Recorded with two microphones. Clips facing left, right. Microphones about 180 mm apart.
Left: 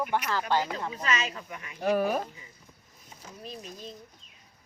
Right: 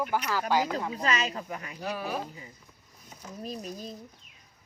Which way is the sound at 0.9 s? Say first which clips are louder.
Right 2 dB; 35° right (ahead or behind).